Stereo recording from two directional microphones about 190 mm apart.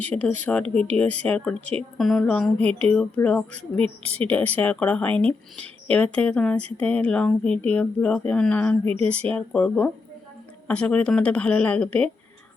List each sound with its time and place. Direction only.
0.1 s speech: 10° left (ahead or behind)
3.8 s a woman's voice: 30° right (ahead or behind)
4.3 s speech: 10° left (ahead or behind)